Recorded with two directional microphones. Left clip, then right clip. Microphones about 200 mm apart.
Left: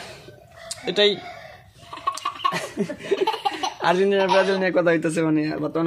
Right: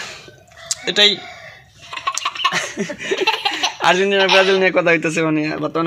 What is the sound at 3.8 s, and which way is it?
A man's voice, 15° right (ahead or behind).